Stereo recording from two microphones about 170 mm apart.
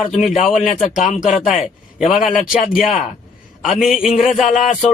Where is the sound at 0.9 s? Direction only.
50° left (ahead or behind).